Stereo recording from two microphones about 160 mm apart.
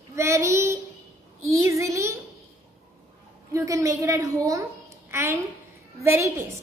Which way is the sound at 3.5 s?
20° right (ahead or behind).